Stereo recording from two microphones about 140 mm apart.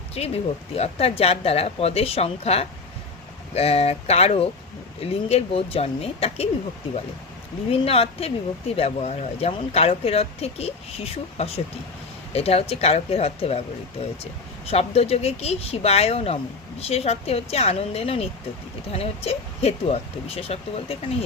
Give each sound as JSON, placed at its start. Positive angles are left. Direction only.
{"t": 0.2, "sound": "speech", "side_deg": 45}
{"t": 7.7, "sound": "speech", "side_deg": 45}